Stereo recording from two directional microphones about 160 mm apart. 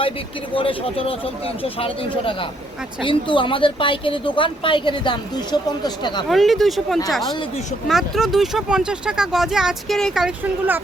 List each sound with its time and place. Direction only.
0.5 s a woman's voice: 35° left (ahead or behind)
6.2 s speech: centre (ahead or behind)